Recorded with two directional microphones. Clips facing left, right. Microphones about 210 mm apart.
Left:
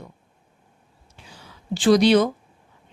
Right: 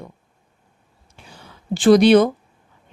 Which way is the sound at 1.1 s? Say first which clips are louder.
Right 3 dB; 55° right (ahead or behind).